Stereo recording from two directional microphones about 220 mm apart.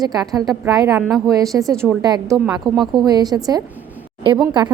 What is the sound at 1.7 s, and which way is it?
Speech, 5° left (ahead or behind).